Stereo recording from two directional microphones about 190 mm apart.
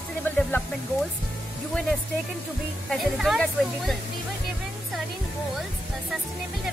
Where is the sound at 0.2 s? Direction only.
10° left (ahead or behind).